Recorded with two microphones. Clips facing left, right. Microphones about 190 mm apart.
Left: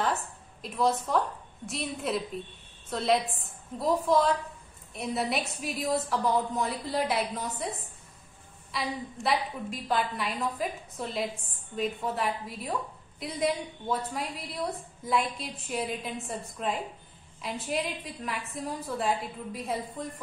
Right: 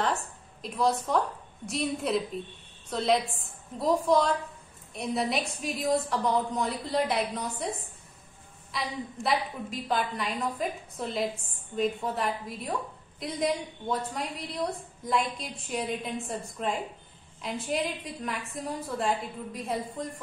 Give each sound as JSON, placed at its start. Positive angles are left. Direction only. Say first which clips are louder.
{"t": 0.0, "sound": "a sound", "louder": "even", "side_deg": 0}
{"t": 1.7, "sound": "a woman's voice", "louder": "right 3 dB", "side_deg": 0}
{"t": 8.7, "sound": "a woman's voice", "louder": "even", "side_deg": 0}